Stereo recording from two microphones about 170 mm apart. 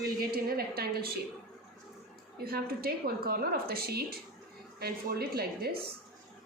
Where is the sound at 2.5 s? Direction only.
65° right (ahead or behind).